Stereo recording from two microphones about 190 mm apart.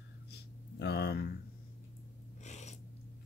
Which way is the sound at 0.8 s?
60° left (ahead or behind).